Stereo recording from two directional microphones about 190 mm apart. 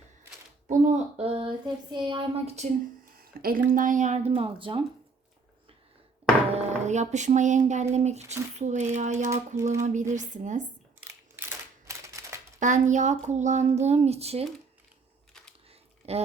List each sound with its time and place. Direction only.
0.7 s a sound: 35° right (ahead or behind)
3.4 s speech: 45° right (ahead or behind); by 4.8 s 30° right (ahead or behind)
6.5 s music: 35° right (ahead or behind)
7.9 s speech: 35° right (ahead or behind)
11.0 s typewriter: 10° right (ahead or behind)
12.5 s speech: 40° right (ahead or behind)
16.0 s speech: 30° right (ahead or behind)